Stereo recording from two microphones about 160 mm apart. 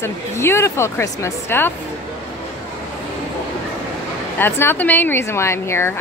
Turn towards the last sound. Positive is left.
turn(degrees=15)  # may be behind; listen again after turning